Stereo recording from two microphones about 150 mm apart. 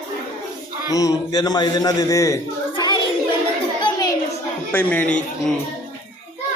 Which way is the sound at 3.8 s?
25° left (ahead or behind).